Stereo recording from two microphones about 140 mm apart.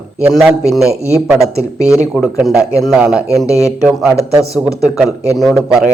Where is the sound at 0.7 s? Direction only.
Centre (ahead or behind).